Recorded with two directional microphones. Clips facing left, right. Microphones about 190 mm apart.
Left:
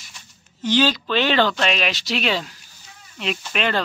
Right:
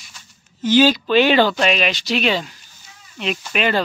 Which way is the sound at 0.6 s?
10° right (ahead or behind).